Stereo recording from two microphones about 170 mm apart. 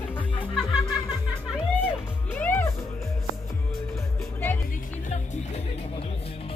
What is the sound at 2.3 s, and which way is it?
Music, 10° left (ahead or behind).